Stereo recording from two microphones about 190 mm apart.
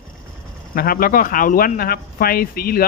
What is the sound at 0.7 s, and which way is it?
Speech, 50° left (ahead or behind).